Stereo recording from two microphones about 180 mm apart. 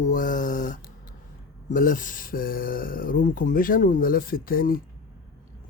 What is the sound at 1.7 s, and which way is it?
Speech, 50° left (ahead or behind).